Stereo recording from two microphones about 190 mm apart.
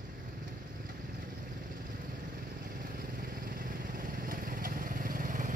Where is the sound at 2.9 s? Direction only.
50° right (ahead or behind).